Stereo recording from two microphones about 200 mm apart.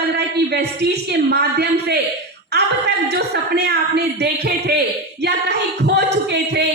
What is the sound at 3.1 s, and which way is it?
A man's voice, 55° right (ahead or behind).